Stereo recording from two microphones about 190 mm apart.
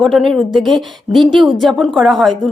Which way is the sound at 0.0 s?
Centre (ahead or behind).